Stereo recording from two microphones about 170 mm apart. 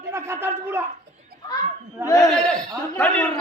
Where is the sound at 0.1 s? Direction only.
15° right (ahead or behind).